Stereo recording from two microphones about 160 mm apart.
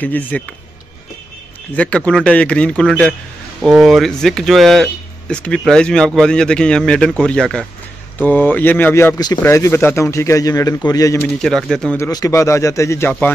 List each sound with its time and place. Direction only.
0.0 s speech: 10° left (ahead or behind)
1.8 s a man's voice: 5° left (ahead or behind)
11.3 s speech: 5° left (ahead or behind)
12.0 s speech: 20° left (ahead or behind)